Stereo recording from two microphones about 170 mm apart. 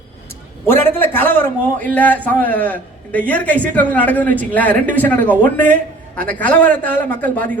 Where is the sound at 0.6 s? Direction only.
10° left (ahead or behind).